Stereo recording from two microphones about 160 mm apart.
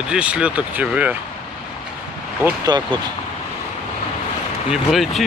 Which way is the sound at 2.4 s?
15° right (ahead or behind).